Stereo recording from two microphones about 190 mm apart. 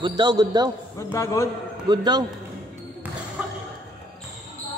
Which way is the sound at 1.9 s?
20° right (ahead or behind).